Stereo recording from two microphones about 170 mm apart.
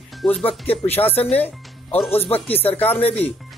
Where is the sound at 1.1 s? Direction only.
35° left (ahead or behind).